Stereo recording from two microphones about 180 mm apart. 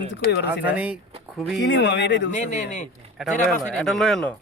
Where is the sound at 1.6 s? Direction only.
80° left.